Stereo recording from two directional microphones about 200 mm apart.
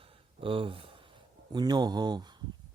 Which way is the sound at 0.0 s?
25° right (ahead or behind).